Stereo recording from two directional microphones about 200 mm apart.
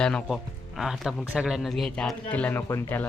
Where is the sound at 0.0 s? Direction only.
5° left (ahead or behind).